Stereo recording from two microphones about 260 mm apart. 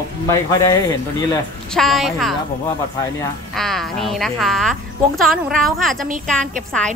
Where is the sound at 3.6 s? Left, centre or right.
Centre.